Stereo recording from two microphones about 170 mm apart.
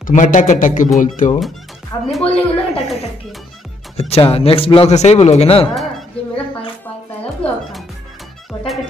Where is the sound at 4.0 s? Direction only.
35° left (ahead or behind).